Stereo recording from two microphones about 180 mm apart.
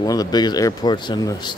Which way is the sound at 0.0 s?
20° left (ahead or behind).